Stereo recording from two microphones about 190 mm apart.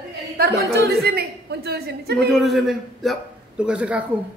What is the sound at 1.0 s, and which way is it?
A woman's voice, 55° right (ahead or behind).